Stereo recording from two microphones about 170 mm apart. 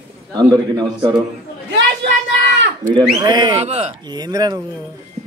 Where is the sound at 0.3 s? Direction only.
25° right (ahead or behind).